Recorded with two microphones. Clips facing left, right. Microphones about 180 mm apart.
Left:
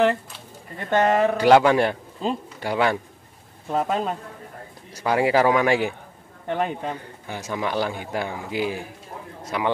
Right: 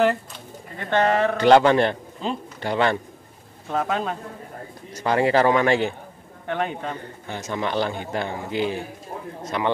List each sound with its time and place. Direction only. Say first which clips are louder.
0.8 s a man's voice: left 1 dB; 10° left (ahead or behind)